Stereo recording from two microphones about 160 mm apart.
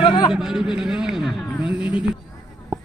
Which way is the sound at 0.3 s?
5° right (ahead or behind).